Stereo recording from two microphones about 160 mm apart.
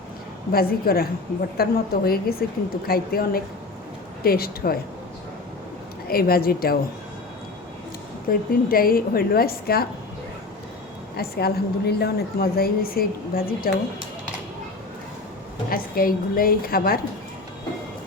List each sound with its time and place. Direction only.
0.5 s a woman's voice: 70° left (ahead or behind)
6.1 s a woman's voice: 70° left (ahead or behind)
8.3 s a woman's voice: 65° left (ahead or behind)
11.2 s a woman's voice: 80° left
15.7 s a woman's voice: 65° left (ahead or behind)